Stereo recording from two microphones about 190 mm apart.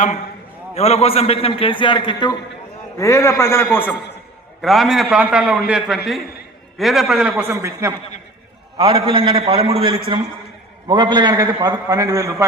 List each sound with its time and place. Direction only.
0.8 s a man's voice: 35° left (ahead or behind); by 3.9 s 10° left (ahead or behind)
4.6 s a man's voice: centre (ahead or behind)
8.8 s a man's voice: 25° right (ahead or behind)